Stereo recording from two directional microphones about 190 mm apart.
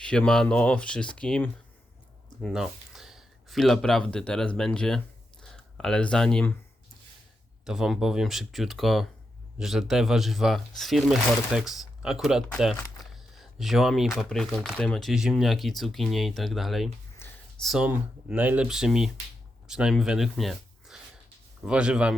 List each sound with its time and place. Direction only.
0.0 s speech: 5° left (ahead or behind)
7.6 s speech: centre (ahead or behind)
17.2 s a sound: 10° left (ahead or behind)
17.6 s speech: 5° right (ahead or behind)